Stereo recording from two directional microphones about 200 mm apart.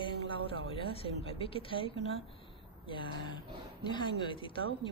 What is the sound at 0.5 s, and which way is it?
Speech, 25° left (ahead or behind).